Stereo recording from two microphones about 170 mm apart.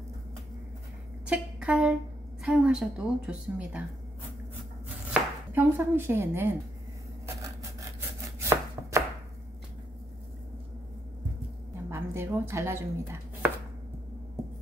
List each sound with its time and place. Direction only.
1.2 s a woman's voice: 5° right (ahead or behind)
5.5 s a woman's voice: 10° right (ahead or behind)
7.4 s chopping: 15° right (ahead or behind)
11.9 s chopping: 15° right (ahead or behind)